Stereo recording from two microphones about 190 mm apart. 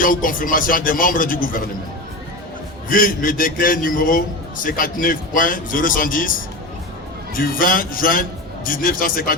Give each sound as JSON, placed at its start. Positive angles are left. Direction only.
{"t": 0.0, "sound": "a man's voice", "side_deg": 45}
{"t": 2.9, "sound": "a man's voice", "side_deg": 45}
{"t": 7.3, "sound": "a man's voice", "side_deg": 50}